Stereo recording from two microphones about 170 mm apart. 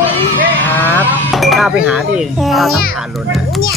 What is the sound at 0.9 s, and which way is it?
Speech, 5° left (ahead or behind).